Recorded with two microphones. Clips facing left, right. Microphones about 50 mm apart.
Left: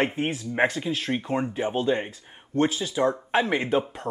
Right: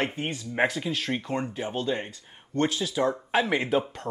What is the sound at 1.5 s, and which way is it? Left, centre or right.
Speech, centre.